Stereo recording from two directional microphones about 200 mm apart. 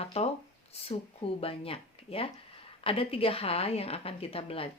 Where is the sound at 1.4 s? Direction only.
30° left (ahead or behind).